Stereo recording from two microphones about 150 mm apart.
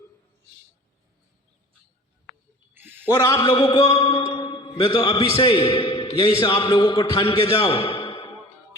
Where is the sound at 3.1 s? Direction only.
20° left (ahead or behind).